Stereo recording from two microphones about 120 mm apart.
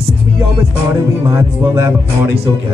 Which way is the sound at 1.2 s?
20° right (ahead or behind).